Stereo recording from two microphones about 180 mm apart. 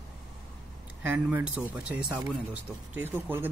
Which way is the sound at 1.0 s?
10° right (ahead or behind).